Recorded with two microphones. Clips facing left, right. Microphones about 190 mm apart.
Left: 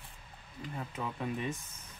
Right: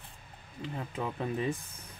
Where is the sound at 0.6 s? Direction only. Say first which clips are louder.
Right 3 dB; 30° right (ahead or behind).